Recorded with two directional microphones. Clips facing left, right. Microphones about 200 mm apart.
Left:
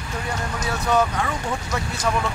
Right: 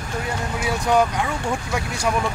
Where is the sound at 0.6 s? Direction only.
15° right (ahead or behind).